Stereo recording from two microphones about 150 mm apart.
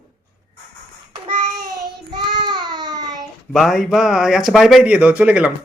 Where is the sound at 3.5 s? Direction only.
Centre (ahead or behind).